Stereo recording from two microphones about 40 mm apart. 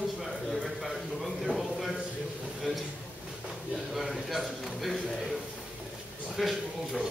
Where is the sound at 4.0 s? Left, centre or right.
Centre.